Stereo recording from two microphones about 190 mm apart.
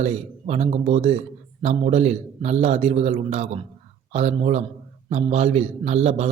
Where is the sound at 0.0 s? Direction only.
35° right (ahead or behind).